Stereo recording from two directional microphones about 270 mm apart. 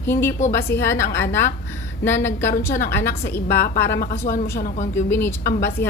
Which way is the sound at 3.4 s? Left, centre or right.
Left.